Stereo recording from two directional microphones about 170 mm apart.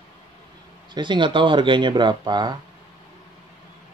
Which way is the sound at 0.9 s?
30° right (ahead or behind).